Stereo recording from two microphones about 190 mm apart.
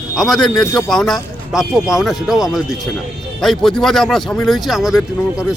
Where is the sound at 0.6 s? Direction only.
15° left (ahead or behind).